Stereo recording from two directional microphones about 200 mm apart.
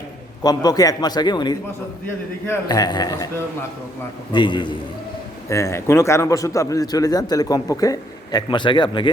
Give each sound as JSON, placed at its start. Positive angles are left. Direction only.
{"t": 0.4, "sound": "a man's voice", "side_deg": 20}
{"t": 4.3, "sound": "a man's voice", "side_deg": 20}